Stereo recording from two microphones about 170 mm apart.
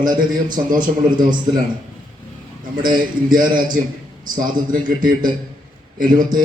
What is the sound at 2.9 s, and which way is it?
A man's voice, 55° right (ahead or behind).